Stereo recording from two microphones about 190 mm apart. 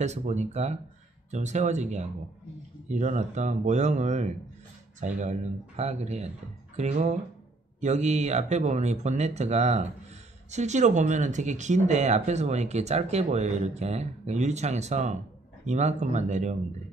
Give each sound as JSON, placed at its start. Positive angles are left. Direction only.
{"t": 0.0, "sound": "speech", "side_deg": -35}